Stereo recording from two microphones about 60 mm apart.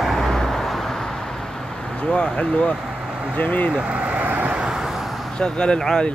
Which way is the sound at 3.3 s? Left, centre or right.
Left.